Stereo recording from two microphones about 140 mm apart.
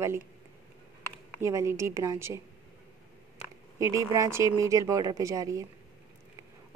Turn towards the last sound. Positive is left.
turn(degrees=-25)  # may be behind; listen again after turning